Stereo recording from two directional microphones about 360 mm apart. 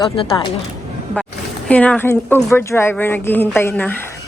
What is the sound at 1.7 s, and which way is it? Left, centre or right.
Speech, centre.